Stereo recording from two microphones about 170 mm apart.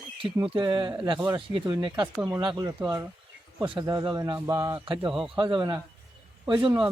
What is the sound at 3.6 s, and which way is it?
A man's voice, 25° right (ahead or behind).